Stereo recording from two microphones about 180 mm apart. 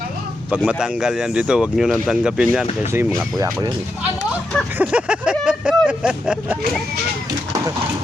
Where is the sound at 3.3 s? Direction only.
20° right (ahead or behind).